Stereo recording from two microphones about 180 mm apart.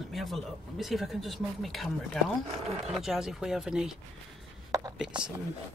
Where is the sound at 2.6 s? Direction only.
35° right (ahead or behind).